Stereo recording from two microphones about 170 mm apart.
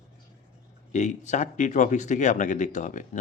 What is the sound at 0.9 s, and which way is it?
Speech, 45° left (ahead or behind).